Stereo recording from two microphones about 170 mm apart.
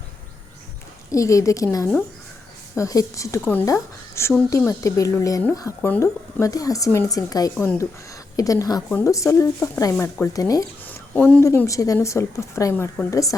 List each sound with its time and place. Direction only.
1.1 s speech: 20° left (ahead or behind)